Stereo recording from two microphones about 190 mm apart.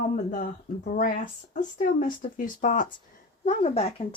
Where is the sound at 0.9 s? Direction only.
45° left (ahead or behind).